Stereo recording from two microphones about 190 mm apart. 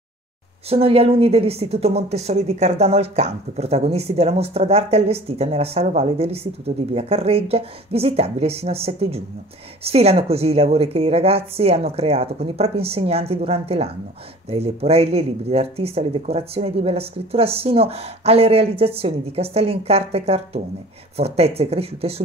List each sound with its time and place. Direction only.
0.7 s a woman's voice: 30° right (ahead or behind)